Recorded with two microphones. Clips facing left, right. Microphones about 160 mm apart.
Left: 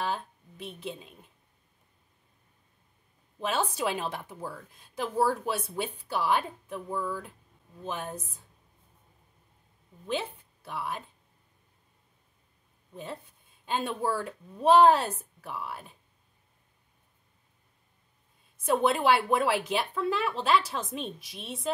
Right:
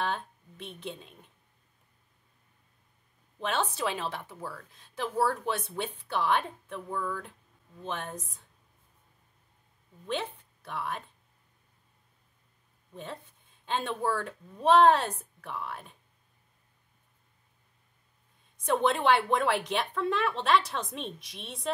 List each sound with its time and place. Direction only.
0.0 s speech: 5° left (ahead or behind)
3.3 s a woman's voice: 5° left (ahead or behind)
10.0 s speech: 5° left (ahead or behind)
12.9 s speech: 5° left (ahead or behind)
18.7 s speech: 5° left (ahead or behind)